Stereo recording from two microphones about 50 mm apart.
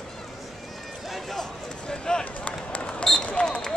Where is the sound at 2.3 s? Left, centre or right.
Left.